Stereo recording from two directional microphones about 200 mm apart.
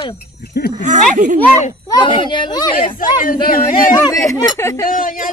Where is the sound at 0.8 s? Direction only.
40° right (ahead or behind).